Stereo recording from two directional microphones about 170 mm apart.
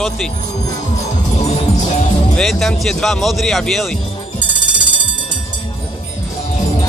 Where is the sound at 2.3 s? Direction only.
5° left (ahead or behind).